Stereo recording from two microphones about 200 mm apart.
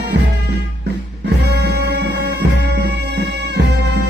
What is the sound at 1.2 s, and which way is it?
Music, 55° right (ahead or behind).